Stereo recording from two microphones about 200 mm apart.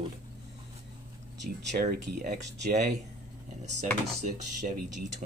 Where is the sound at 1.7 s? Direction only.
45° right (ahead or behind).